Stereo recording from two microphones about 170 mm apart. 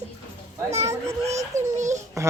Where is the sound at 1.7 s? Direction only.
45° right (ahead or behind).